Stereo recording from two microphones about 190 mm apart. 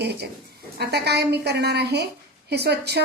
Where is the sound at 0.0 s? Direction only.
60° right (ahead or behind).